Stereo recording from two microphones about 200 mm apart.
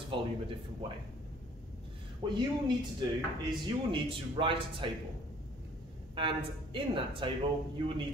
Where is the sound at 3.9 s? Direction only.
25° right (ahead or behind).